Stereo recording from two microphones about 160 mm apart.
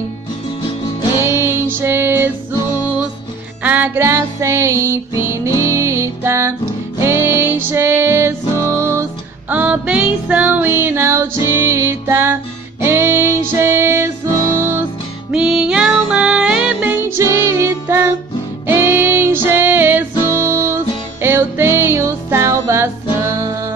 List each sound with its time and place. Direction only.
1.2 s music: 15° right (ahead or behind)
3.6 s music: 10° right (ahead or behind)
15.3 s music: 5° right (ahead or behind)